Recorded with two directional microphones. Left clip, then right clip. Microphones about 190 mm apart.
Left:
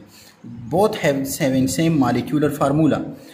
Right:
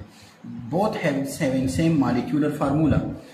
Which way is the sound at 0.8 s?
60° left (ahead or behind).